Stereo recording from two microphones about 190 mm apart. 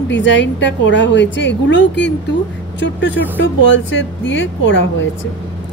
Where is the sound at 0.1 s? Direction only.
70° left (ahead or behind).